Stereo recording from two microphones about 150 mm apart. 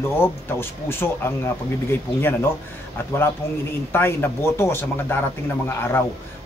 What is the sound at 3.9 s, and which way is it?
Speech, 15° left (ahead or behind).